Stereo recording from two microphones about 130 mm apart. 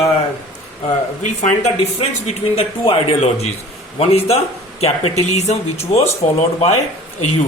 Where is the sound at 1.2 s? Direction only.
65° left (ahead or behind).